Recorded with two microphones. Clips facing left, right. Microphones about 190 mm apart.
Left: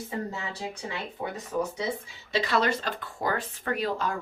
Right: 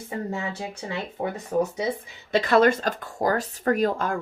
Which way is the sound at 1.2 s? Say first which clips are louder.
Right 6 dB; 45° right (ahead or behind).